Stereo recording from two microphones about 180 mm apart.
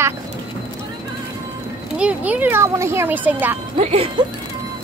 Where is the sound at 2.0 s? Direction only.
10° right (ahead or behind).